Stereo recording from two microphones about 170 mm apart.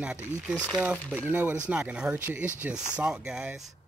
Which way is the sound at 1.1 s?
10° right (ahead or behind).